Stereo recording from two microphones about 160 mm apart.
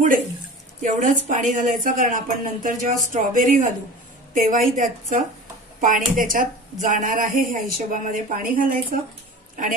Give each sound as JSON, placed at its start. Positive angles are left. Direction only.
{"t": 0.8, "sound": "speech", "side_deg": -50}